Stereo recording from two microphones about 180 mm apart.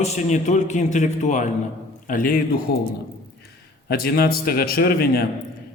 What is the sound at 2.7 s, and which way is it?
Speech, 60° left (ahead or behind).